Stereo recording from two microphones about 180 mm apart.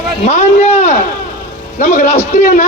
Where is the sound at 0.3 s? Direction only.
40° left (ahead or behind).